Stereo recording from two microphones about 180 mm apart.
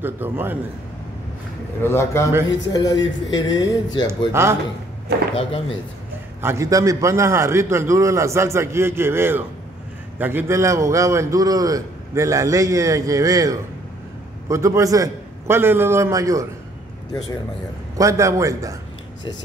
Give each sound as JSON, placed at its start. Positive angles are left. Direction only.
{"t": 0.0, "sound": "a man's voice", "side_deg": -10}
{"t": 1.8, "sound": "a man's voice", "side_deg": 15}
{"t": 4.3, "sound": "a man's voice", "side_deg": -15}
{"t": 5.3, "sound": "speech", "side_deg": 30}
{"t": 6.4, "sound": "a man's voice", "side_deg": -15}
{"t": 17.9, "sound": "a man's voice", "side_deg": -15}